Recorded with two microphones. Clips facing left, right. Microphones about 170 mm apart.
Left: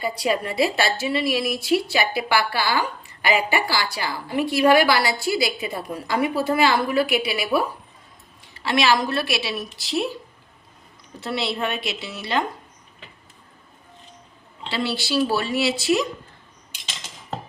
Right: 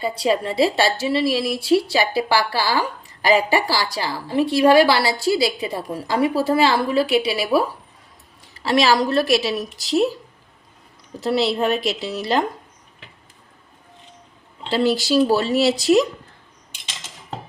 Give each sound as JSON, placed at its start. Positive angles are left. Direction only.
{"t": 0.0, "sound": "a woman's voice", "side_deg": -30}
{"t": 11.2, "sound": "a woman's voice", "side_deg": -40}
{"t": 14.7, "sound": "a woman's voice", "side_deg": -45}